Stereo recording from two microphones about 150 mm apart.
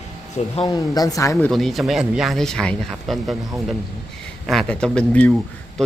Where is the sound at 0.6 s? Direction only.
25° left (ahead or behind).